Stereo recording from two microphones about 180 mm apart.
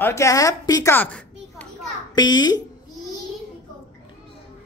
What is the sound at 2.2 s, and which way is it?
Speech, 20° left (ahead or behind).